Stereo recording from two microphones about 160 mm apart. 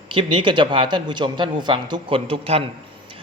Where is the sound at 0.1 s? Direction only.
30° right (ahead or behind).